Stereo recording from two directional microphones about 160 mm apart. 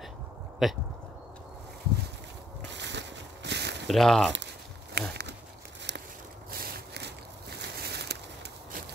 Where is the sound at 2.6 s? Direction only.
90° right.